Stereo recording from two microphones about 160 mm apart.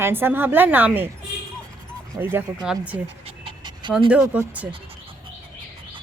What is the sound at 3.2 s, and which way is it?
Pant, 30° right (ahead or behind).